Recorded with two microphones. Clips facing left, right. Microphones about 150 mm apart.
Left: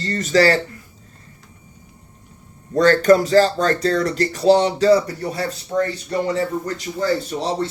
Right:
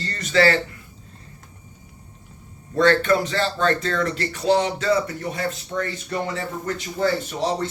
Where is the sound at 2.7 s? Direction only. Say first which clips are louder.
Left 5 dB; 40° left (ahead or behind).